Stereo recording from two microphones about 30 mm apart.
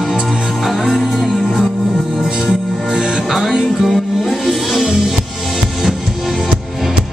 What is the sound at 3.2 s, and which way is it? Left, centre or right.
Music, centre.